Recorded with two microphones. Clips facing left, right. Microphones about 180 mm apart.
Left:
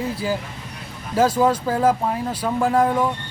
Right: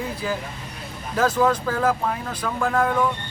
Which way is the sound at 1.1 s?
25° left (ahead or behind).